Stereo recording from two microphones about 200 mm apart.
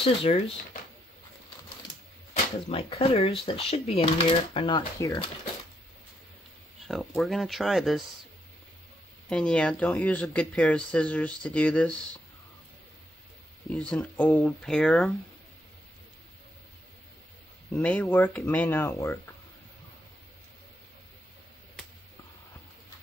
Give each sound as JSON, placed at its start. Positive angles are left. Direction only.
{"t": 0.0, "sound": "speech", "side_deg": 30}
{"t": 2.7, "sound": "speech", "side_deg": 30}
{"t": 6.9, "sound": "speech", "side_deg": 0}
{"t": 9.3, "sound": "speech", "side_deg": 5}
{"t": 13.7, "sound": "speech", "side_deg": 5}
{"t": 17.7, "sound": "speech", "side_deg": 5}